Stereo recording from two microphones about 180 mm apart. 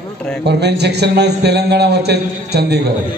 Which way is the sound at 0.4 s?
70° right (ahead or behind).